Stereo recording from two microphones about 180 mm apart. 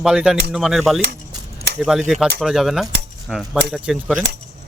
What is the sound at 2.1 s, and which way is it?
Speech, centre (ahead or behind).